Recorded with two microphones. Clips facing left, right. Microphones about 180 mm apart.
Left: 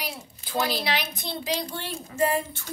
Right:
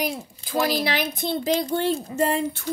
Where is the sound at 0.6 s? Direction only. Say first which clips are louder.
Right 5 dB; 45° right (ahead or behind).